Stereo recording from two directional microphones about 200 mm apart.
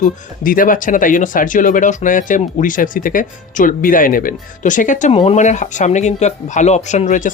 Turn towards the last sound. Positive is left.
turn(degrees=40)  # may be behind; listen again after turning